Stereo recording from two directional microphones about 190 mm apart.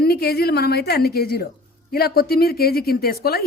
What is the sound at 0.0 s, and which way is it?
A woman's voice, 55° left (ahead or behind).